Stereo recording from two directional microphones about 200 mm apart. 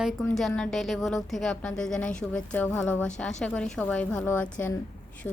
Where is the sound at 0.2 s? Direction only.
5° left (ahead or behind).